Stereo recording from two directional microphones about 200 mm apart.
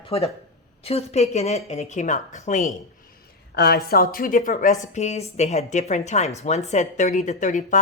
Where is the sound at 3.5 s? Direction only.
50° left (ahead or behind).